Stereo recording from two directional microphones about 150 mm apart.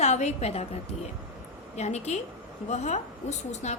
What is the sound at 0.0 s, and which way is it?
Speech, 50° left (ahead or behind).